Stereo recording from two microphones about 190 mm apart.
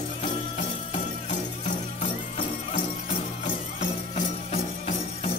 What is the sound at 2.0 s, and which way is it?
Music, 40° left (ahead or behind).